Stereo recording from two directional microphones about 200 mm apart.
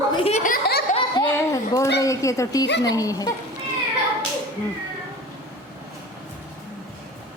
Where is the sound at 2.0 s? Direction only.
15° left (ahead or behind).